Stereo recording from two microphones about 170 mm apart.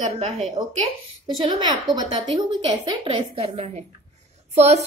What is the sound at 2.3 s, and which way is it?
A woman's voice, 25° right (ahead or behind).